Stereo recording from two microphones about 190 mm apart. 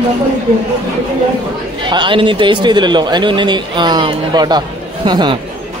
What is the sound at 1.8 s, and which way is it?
A man's voice, 25° right (ahead or behind).